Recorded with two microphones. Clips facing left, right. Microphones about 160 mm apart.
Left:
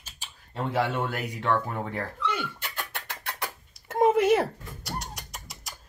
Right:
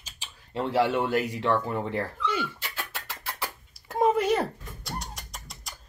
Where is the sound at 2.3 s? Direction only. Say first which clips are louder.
Right 1 dB; 55° left (ahead or behind).